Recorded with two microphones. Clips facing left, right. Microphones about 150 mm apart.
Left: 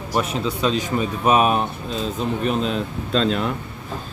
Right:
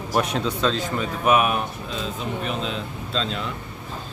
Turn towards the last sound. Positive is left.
turn(degrees=55)  # may be behind; listen again after turning